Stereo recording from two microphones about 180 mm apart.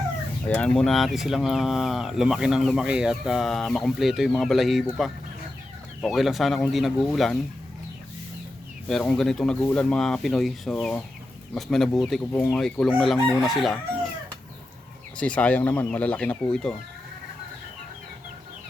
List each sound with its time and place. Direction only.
0.4 s speech: 5° left (ahead or behind)
6.0 s speech: centre (ahead or behind)
8.9 s speech: 5° left (ahead or behind)
15.2 s speech: 5° left (ahead or behind)